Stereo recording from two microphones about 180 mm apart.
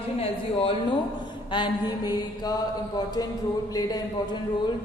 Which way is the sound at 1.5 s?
25° left (ahead or behind).